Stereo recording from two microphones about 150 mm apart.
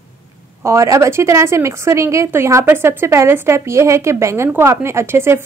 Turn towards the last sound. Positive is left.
turn(degrees=-15)  # may be behind; listen again after turning